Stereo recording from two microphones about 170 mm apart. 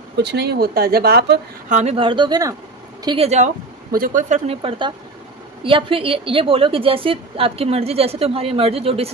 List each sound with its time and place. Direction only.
0.2 s speech: 75° right (ahead or behind)
1.7 s a woman's voice: 40° right (ahead or behind); by 2.5 s 25° right (ahead or behind)
3.1 s speech: 40° right (ahead or behind)
4.6 s a woman's voice: 30° right (ahead or behind)